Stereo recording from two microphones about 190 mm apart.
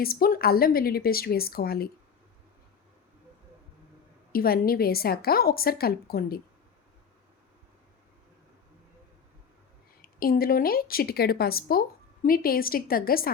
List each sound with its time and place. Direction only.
0.0 s speech: 50° left (ahead or behind)
4.3 s speech: 50° left (ahead or behind)
10.2 s speech: 50° left (ahead or behind)